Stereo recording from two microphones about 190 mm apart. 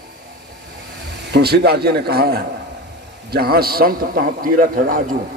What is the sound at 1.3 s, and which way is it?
A man's voice, 60° right (ahead or behind).